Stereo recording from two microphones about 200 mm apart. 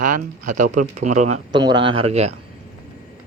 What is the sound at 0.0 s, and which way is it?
Speech, 40° right (ahead or behind).